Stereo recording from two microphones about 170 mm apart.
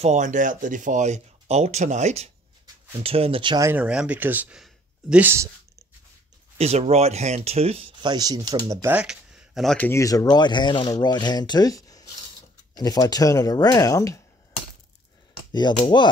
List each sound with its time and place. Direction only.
0.0 s speech: 45° right (ahead or behind); by 3.6 s 30° right (ahead or behind)
3.6 s speech: 10° right (ahead or behind)
6.6 s speech: 40° right (ahead or behind)
8.8 s speech: 5° right (ahead or behind); by 14.2 s 20° left (ahead or behind)
15.5 s speech: 25° left (ahead or behind)